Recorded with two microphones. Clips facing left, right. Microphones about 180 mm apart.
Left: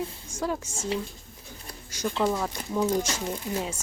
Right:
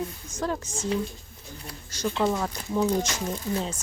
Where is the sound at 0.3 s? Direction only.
10° left (ahead or behind).